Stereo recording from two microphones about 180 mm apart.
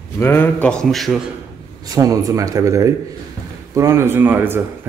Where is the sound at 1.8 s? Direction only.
20° right (ahead or behind).